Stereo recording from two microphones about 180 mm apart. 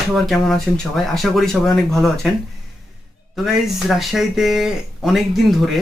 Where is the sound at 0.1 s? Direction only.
Centre (ahead or behind).